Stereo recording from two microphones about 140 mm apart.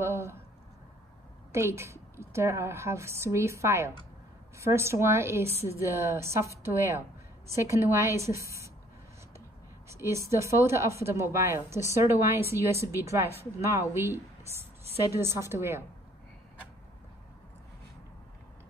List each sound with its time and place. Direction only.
0.0 s a sound: 20° right (ahead or behind)
1.5 s speech: 20° right (ahead or behind)
9.8 s a woman's voice: 20° right (ahead or behind)